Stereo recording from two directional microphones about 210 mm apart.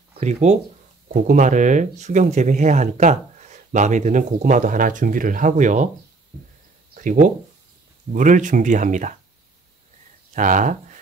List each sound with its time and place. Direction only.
0.2 s speech: 35° right (ahead or behind)
6.9 s speech: 40° right (ahead or behind)
10.3 s speech: 40° right (ahead or behind)